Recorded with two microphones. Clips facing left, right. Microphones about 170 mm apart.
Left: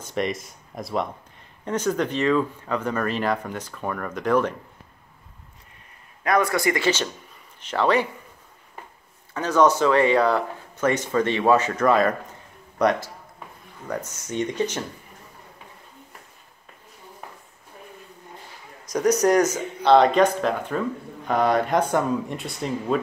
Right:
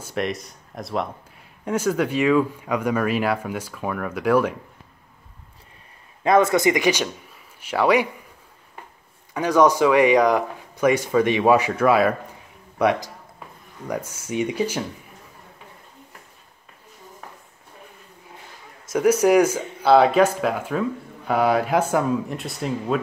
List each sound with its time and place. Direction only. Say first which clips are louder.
0.0 s speech: even; centre (ahead or behind)
6.2 s speech: right 4 dB; 25° right (ahead or behind)
9.3 s speech: right 2 dB; 10° right (ahead or behind)
18.9 s a man's voice: right 2 dB; 5° right (ahead or behind)